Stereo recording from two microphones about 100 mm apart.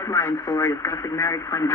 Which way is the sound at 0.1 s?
30° left (ahead or behind).